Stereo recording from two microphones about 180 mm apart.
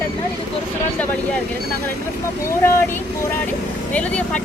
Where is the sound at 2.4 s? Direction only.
15° left (ahead or behind).